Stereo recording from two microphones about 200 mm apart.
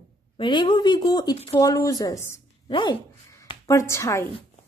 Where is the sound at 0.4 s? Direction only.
25° left (ahead or behind).